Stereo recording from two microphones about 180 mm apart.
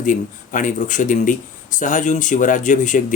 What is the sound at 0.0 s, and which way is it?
Speech, 45° left (ahead or behind).